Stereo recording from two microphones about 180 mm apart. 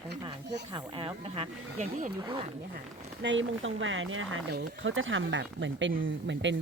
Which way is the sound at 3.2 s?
90° right.